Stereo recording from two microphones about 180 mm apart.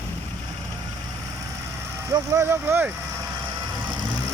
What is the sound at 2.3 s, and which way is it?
Speech, 15° right (ahead or behind).